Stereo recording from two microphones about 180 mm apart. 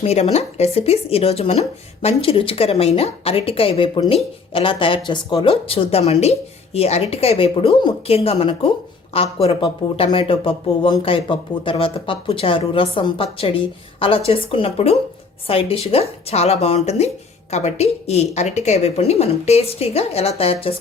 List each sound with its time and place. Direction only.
0.0 s speech: 35° left (ahead or behind)